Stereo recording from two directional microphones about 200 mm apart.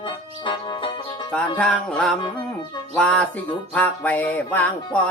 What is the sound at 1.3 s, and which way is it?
Music, 5° left (ahead or behind).